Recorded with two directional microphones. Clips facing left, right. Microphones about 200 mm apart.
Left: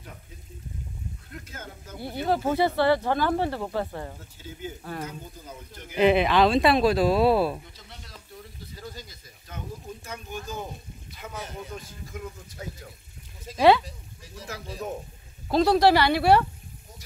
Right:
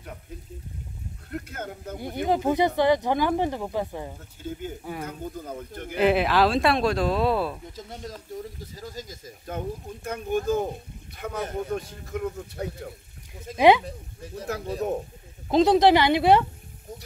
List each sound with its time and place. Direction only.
1.3 s speech: 55° right (ahead or behind)
2.0 s speech: 15° right (ahead or behind)
4.4 s speech: 55° right (ahead or behind)
5.9 s speech: 5° right (ahead or behind)
7.7 s speech: 45° right (ahead or behind)
13.6 s speech: 15° right (ahead or behind)
13.8 s speech: 55° right (ahead or behind)
15.4 s speech: 20° right (ahead or behind)